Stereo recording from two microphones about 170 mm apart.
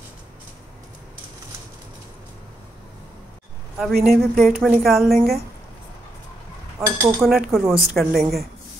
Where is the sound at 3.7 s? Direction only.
Centre (ahead or behind).